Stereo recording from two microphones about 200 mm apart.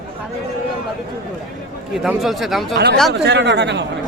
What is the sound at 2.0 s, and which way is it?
Speech, centre (ahead or behind).